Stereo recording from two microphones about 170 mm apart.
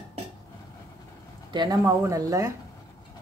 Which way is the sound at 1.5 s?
20° right (ahead or behind).